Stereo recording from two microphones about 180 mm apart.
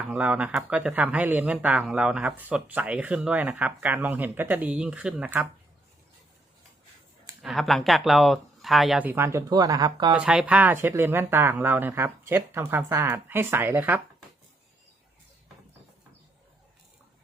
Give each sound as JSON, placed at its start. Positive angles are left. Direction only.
{"t": 0.1, "sound": "speech", "side_deg": -10}
{"t": 7.4, "sound": "speech", "side_deg": 0}
{"t": 10.2, "sound": "speech", "side_deg": -5}